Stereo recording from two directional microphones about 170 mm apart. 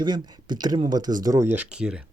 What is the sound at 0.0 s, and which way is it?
Speech, 25° right (ahead or behind).